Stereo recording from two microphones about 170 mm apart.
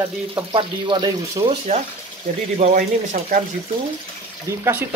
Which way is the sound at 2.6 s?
50° right (ahead or behind).